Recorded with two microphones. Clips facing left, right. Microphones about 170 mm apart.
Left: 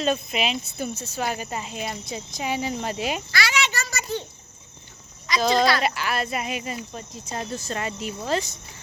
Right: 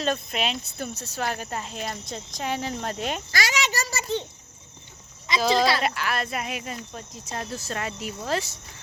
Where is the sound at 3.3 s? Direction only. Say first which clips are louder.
Left 1 dB; 40° right (ahead or behind).